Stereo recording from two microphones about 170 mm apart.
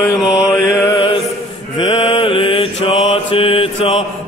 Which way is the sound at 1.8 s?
35° left (ahead or behind).